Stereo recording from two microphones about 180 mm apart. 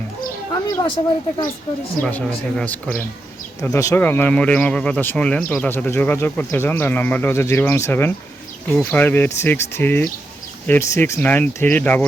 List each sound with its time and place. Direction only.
0.5 s speech: 25° left (ahead or behind)
2.0 s speech: 5° left (ahead or behind)
3.6 s speech: 15° left (ahead or behind)